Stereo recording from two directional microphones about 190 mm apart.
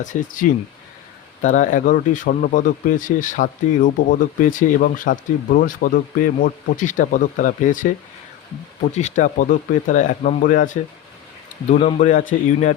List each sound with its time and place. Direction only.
0.0 s speech: 45° left (ahead or behind)
11.7 s a man's voice: 40° left (ahead or behind)